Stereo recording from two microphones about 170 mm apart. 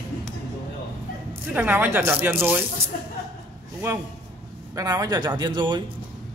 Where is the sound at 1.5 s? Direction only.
10° right (ahead or behind).